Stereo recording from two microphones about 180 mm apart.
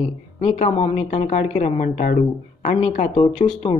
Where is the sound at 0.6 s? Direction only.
35° left (ahead or behind).